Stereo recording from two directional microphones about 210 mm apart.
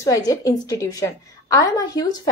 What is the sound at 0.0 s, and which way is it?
A woman's voice, 15° left (ahead or behind).